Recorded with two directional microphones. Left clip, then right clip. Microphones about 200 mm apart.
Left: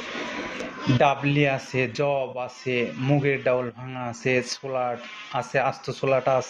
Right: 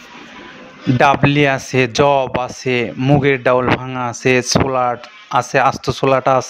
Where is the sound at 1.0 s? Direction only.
55° right (ahead or behind).